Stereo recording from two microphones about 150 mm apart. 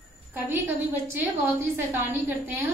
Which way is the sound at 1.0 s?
15° right (ahead or behind).